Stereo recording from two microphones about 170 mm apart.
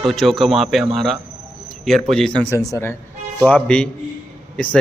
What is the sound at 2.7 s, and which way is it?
A man's voice, 15° left (ahead or behind).